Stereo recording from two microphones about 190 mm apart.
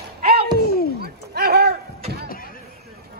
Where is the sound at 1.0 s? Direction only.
55° right (ahead or behind).